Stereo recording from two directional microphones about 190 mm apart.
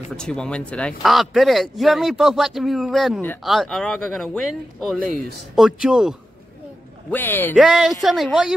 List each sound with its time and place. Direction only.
0.1 s a man's voice: 5° left (ahead or behind)
7.1 s speech: 10° left (ahead or behind)
7.5 s a man's voice: centre (ahead or behind)